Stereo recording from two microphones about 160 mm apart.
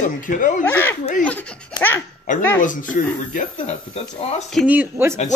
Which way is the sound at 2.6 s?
55° left (ahead or behind).